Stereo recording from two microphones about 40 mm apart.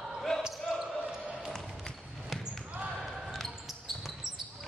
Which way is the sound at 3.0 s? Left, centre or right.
Centre.